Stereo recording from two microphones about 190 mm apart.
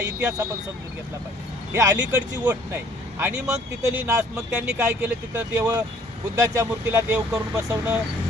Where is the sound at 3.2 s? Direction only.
10° right (ahead or behind).